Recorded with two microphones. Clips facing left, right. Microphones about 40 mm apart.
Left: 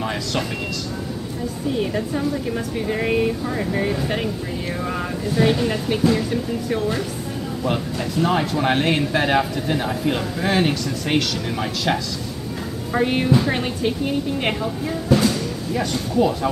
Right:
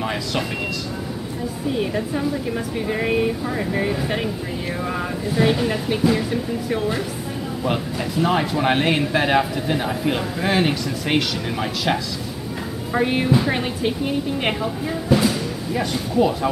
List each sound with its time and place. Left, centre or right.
0.0 s speech: centre
1.8 s a woman's voice: centre